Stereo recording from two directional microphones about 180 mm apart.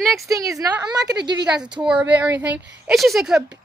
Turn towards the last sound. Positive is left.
turn(degrees=-5)  # may be behind; listen again after turning